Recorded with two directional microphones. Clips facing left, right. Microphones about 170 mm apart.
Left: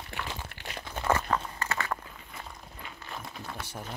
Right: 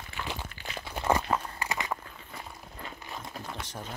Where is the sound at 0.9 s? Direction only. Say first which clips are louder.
Right 1 dB; 15° right (ahead or behind).